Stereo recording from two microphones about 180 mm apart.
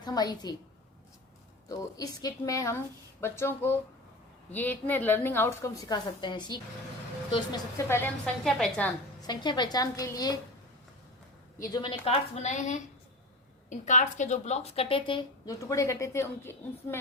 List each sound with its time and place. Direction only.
0.0 s a woman's voice: 20° left (ahead or behind)
1.7 s a woman's voice: 20° left (ahead or behind); by 8.9 s centre (ahead or behind)
9.2 s a woman's voice: 25° left (ahead or behind)
11.6 s a woman's voice: 25° left (ahead or behind)
15.5 s a woman's voice: 15° left (ahead or behind)